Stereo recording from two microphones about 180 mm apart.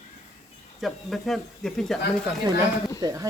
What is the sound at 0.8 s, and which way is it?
Speech, centre (ahead or behind).